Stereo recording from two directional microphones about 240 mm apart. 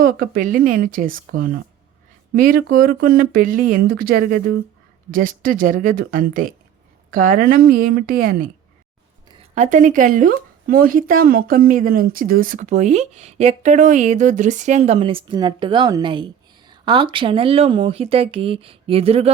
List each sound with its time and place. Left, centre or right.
0.0 s speech: right
9.3 s speech: right